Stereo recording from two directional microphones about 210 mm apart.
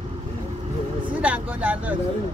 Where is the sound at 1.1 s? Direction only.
5° right (ahead or behind).